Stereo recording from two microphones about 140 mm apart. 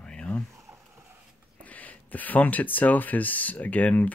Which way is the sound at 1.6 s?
10° left (ahead or behind).